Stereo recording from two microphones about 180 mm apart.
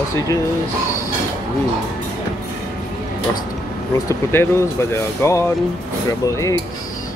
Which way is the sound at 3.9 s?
15° left (ahead or behind).